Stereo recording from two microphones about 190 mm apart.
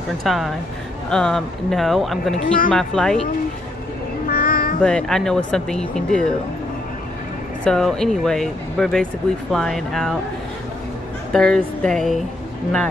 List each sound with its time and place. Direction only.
0.2 s speech: centre (ahead or behind)
2.3 s speech: 45° left (ahead or behind)
2.7 s speech: 5° left (ahead or behind)
4.3 s music: 50° left (ahead or behind)
4.8 s speech: 5° left (ahead or behind)
7.6 s speech: 5° left (ahead or behind)
11.3 s speech: 5° left (ahead or behind)